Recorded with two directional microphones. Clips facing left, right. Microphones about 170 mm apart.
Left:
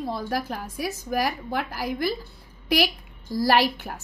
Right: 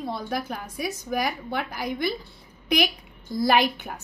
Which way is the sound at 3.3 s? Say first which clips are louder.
Even; 5° left (ahead or behind).